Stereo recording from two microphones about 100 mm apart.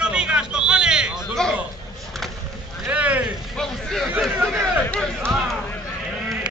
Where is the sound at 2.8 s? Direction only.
15° right (ahead or behind); by 4.0 s 5° left (ahead or behind).